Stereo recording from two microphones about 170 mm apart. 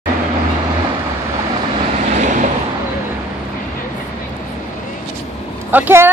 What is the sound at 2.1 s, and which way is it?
Vehicle, 45° right (ahead or behind).